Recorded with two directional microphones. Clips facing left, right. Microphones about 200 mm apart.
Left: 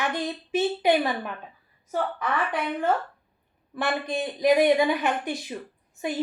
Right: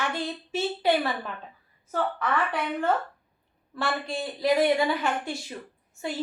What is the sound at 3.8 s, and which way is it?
A woman's voice, 20° left (ahead or behind).